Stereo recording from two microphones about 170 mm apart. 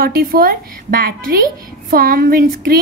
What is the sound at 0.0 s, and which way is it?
A woman's voice, 60° right (ahead or behind).